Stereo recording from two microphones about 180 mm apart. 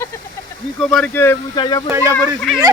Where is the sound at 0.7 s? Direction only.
Centre (ahead or behind).